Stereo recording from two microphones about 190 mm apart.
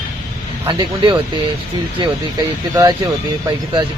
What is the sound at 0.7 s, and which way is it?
Speech, 25° right (ahead or behind).